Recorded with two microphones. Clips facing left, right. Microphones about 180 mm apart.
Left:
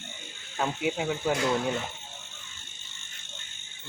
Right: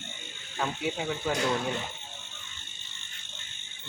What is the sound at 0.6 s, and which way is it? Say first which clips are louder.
Speech: left 3 dB; 15° left (ahead or behind).